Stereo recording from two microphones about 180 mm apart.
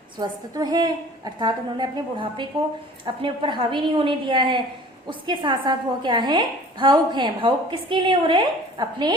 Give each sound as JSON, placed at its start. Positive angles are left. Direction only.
{"t": 0.2, "sound": "a woman's voice", "side_deg": -20}